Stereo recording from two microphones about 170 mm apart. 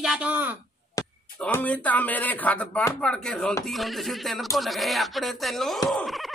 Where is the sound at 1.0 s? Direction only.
20° left (ahead or behind).